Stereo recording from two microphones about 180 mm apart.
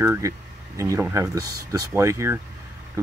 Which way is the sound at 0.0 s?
15° right (ahead or behind).